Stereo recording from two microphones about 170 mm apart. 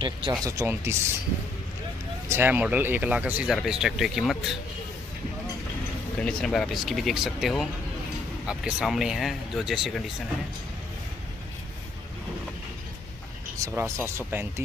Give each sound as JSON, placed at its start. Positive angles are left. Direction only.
{"t": 0.0, "sound": "speech", "side_deg": -25}
{"t": 0.5, "sound": "speech", "side_deg": -15}
{"t": 2.2, "sound": "speech", "side_deg": -10}
{"t": 6.1, "sound": "speech", "side_deg": 5}
{"t": 13.6, "sound": "speech", "side_deg": -15}